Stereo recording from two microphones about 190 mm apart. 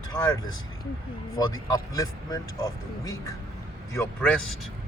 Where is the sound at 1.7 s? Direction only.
20° left (ahead or behind).